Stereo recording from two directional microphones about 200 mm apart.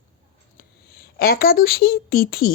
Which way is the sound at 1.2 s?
45° left (ahead or behind).